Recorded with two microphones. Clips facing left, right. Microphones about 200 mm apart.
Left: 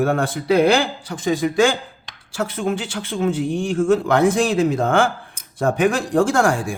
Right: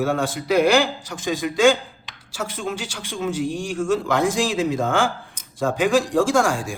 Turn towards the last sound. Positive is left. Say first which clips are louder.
# left 2 dB
turn(degrees=60)  # may be behind; listen again after turning